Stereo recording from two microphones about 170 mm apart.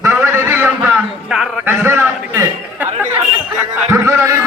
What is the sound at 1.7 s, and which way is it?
Chatter, 15° right (ahead or behind).